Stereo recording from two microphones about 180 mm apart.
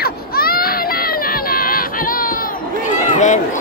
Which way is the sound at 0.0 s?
55° left (ahead or behind).